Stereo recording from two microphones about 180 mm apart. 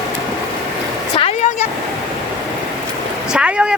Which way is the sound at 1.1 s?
35° left (ahead or behind).